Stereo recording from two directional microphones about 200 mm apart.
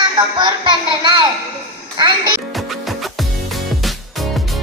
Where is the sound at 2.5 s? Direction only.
Centre (ahead or behind).